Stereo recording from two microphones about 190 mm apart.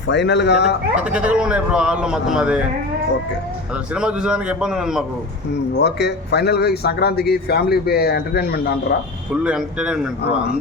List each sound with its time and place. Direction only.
0.1 s speech: 65° left (ahead or behind)
0.9 s a man's voice: 5° right (ahead or behind)
3.9 s a man's voice: 5° right (ahead or behind)
5.8 s speech: 60° left (ahead or behind)
9.3 s a man's voice: 5° right (ahead or behind)